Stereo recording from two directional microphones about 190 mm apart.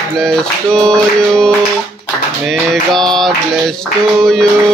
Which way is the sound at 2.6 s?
Centre (ahead or behind).